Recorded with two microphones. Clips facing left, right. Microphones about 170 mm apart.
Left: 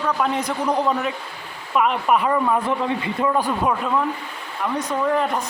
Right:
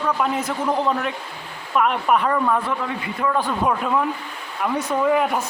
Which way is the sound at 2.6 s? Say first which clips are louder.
Left 3 dB; 25° left (ahead or behind).